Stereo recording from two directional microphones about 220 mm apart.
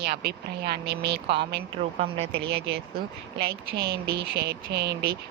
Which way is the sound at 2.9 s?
45° right (ahead or behind).